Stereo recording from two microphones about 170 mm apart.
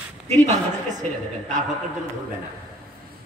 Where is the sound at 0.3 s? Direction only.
40° right (ahead or behind).